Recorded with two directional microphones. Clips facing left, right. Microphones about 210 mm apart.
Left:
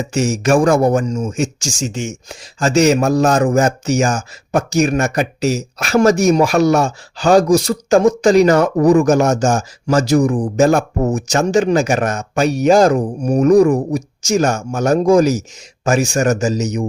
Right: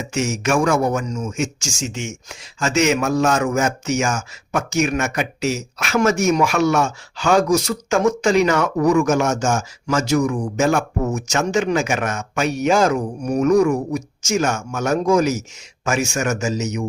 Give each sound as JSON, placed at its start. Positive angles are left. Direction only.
{"t": 0.0, "sound": "speech", "side_deg": 35}